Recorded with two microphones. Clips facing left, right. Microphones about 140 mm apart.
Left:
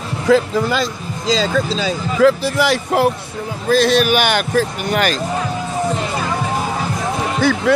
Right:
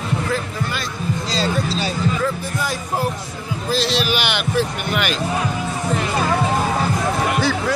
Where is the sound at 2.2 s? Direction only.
90° left.